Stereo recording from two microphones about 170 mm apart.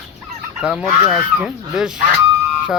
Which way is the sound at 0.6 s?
5° right (ahead or behind).